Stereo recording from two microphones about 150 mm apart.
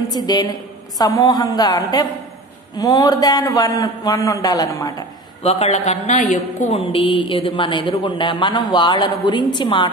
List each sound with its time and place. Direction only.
0.1 s a man's voice: 25° left (ahead or behind)
5.4 s speech: 40° left (ahead or behind)
6.8 s speech: 35° left (ahead or behind)